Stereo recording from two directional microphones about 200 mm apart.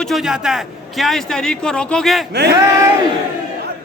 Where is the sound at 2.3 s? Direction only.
55° right (ahead or behind).